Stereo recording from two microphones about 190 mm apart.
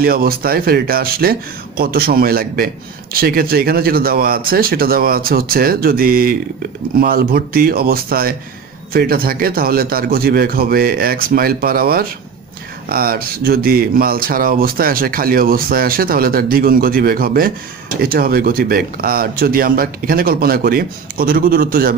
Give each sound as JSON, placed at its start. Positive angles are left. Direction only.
{"t": 0.0, "sound": "speech", "side_deg": -50}